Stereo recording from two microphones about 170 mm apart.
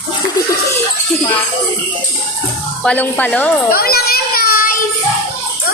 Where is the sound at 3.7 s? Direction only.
65° left (ahead or behind).